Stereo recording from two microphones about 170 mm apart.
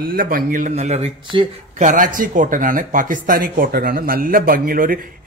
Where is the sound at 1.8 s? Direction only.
50° right (ahead or behind).